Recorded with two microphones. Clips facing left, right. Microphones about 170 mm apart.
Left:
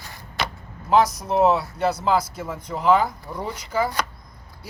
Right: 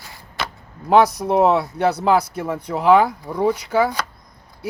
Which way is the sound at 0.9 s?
65° right (ahead or behind).